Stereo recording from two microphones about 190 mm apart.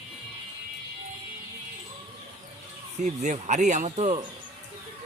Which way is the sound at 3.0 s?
40° right (ahead or behind).